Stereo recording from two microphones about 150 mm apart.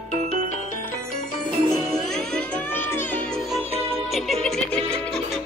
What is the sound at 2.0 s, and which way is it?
Music, 5° left (ahead or behind).